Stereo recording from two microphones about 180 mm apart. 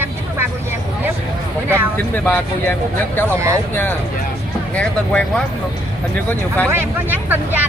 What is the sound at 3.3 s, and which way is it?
Speech, 15° right (ahead or behind).